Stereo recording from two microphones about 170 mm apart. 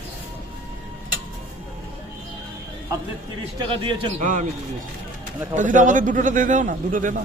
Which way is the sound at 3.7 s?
30° right (ahead or behind).